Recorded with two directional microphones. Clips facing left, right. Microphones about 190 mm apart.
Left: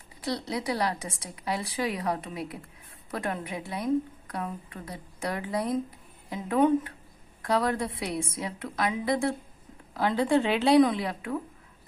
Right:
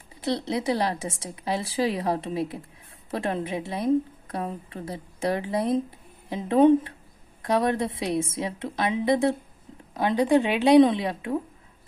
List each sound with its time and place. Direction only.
0.2 s a woman's voice: 25° right (ahead or behind)